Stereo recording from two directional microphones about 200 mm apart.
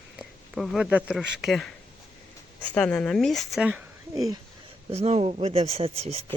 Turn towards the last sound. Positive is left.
turn(degrees=-30)  # may be behind; listen again after turning